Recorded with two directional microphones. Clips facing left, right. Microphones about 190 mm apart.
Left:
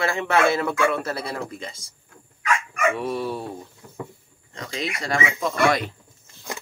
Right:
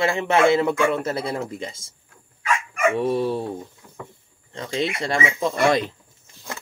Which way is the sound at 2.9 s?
25° right (ahead or behind).